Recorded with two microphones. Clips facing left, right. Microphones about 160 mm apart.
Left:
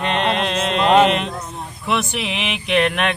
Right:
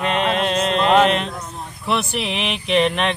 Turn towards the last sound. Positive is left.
turn(degrees=0)  # may be behind; listen again after turning